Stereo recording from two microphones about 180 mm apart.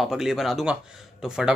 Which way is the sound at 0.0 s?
Centre (ahead or behind).